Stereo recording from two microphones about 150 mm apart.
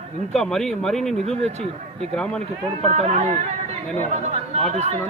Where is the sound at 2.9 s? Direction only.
50° right (ahead or behind).